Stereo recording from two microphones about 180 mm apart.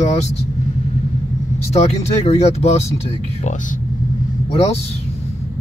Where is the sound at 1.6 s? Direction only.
35° left (ahead or behind).